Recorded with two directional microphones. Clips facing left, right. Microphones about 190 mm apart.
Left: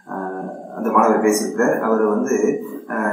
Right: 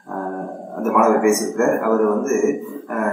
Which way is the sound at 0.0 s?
Centre (ahead or behind).